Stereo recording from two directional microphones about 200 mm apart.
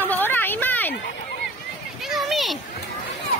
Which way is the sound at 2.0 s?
Centre (ahead or behind).